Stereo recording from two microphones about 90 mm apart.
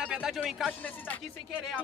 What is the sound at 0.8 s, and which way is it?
Speech, 20° left (ahead or behind).